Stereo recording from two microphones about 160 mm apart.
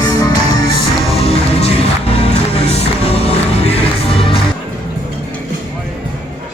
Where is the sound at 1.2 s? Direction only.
40° left (ahead or behind).